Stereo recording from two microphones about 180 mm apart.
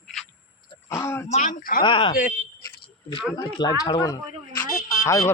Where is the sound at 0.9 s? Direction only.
15° left (ahead or behind).